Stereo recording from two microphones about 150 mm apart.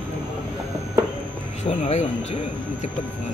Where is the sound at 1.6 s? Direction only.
45° left (ahead or behind).